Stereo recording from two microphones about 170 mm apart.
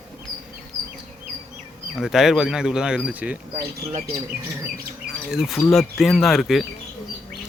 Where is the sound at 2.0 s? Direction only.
Centre (ahead or behind).